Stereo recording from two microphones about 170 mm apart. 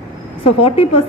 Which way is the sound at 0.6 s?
35° left (ahead or behind).